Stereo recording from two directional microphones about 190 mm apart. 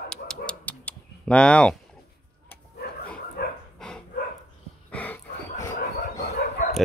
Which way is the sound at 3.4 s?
55° left (ahead or behind).